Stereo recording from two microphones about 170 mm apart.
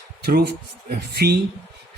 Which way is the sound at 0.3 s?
70° right (ahead or behind).